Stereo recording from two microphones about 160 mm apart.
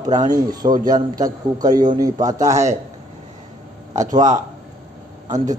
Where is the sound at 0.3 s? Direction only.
25° right (ahead or behind).